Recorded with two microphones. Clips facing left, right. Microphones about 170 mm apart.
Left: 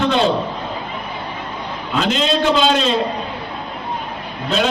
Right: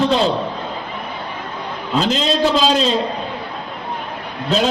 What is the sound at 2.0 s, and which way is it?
Speech, 35° right (ahead or behind).